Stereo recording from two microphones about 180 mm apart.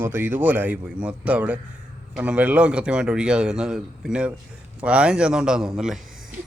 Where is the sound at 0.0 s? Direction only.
10° right (ahead or behind).